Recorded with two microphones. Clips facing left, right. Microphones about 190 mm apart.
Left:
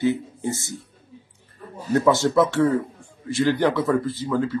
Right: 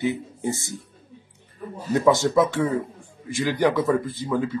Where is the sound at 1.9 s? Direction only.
10° right (ahead or behind).